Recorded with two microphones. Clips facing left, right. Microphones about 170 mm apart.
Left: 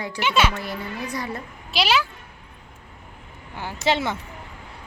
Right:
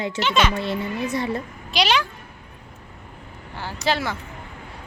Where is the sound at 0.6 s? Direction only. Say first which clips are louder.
Right 5 dB; 25° right (ahead or behind).